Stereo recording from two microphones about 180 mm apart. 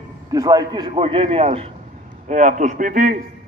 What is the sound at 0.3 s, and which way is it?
A man's voice, 20° right (ahead or behind).